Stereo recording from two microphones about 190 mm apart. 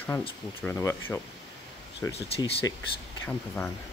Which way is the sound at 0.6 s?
10° left (ahead or behind).